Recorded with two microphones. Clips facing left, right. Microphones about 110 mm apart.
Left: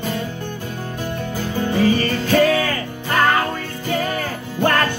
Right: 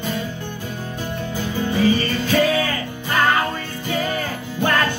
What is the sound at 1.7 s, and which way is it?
Music, 45° left (ahead or behind).